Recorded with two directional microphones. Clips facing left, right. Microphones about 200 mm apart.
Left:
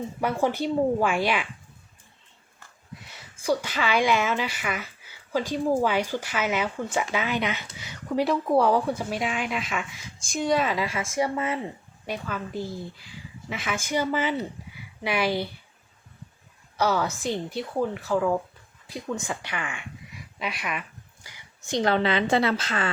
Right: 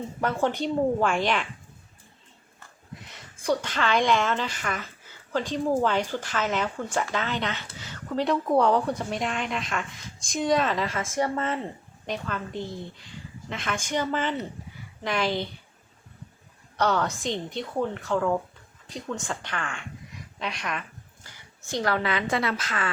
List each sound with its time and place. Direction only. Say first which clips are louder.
0.2 s speech: left 1 dB; 10° left (ahead or behind)
3.1 s a woman's voice: left 1 dB; 5° left (ahead or behind)
16.7 s a woman's voice: even; 5° left (ahead or behind)
21.2 s a woman's voice: left 4 dB; 20° left (ahead or behind)